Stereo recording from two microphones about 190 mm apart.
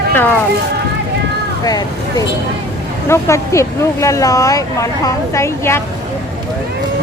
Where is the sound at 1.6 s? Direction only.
20° left (ahead or behind).